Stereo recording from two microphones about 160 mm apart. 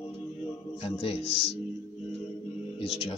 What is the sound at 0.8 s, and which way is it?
Speech, 35° left (ahead or behind).